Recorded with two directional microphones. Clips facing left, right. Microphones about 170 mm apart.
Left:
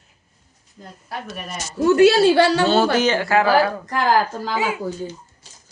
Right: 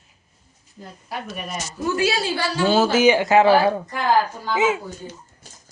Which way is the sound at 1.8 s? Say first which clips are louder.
Left 10 dB; 65° left (ahead or behind).